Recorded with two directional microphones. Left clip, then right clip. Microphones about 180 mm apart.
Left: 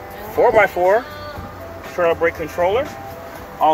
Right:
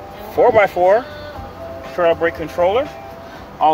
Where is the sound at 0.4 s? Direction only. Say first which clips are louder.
Right 1 dB; 15° right (ahead or behind).